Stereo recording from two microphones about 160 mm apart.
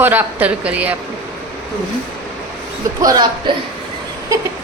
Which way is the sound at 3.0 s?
25° right (ahead or behind).